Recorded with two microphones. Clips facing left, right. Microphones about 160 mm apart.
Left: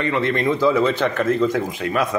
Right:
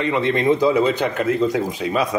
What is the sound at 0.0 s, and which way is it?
A man's voice, 20° right (ahead or behind).